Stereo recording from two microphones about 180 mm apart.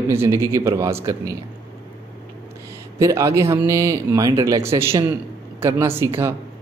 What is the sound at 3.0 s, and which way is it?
Speech, 15° right (ahead or behind).